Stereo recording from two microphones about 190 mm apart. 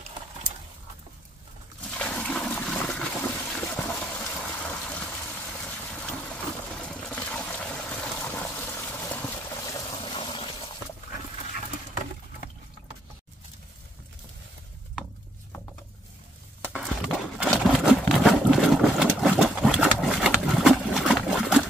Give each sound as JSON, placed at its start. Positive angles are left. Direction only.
{"t": 2.0, "sound": "toilet flush", "side_deg": 5}
{"t": 9.1, "sound": "water", "side_deg": 10}
{"t": 16.6, "sound": "a sound", "side_deg": -5}
{"t": 17.4, "sound": "sewing machine", "side_deg": -5}